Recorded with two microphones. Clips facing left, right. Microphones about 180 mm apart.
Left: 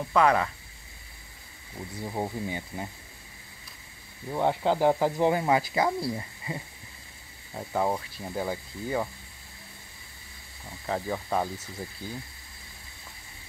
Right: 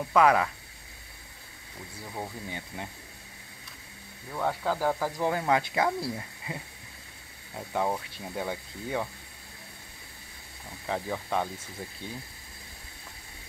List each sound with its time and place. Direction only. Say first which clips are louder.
0.1 s speech: right 1 dB; 5° right (ahead or behind)
2.0 s speech: left 6 dB; 25° left (ahead or behind)
2.4 s speech: left 4 dB; 5° left (ahead or behind)
4.3 s speech: left 4 dB; 25° left (ahead or behind); by 9.1 s centre (ahead or behind)
10.9 s speech: left 2 dB; 5° left (ahead or behind)